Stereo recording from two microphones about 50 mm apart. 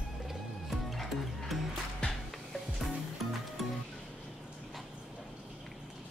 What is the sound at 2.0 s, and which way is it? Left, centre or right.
Music, centre.